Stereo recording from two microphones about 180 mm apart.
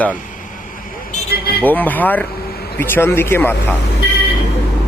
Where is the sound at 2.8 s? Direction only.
10° left (ahead or behind).